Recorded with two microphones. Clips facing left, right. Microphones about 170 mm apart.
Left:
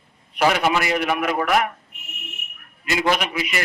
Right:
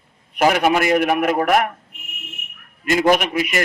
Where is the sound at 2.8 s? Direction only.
50° right (ahead or behind).